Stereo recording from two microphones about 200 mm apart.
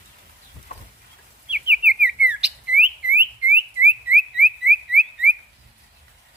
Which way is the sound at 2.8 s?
10° right (ahead or behind).